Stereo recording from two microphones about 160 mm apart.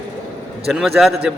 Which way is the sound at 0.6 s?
Centre (ahead or behind).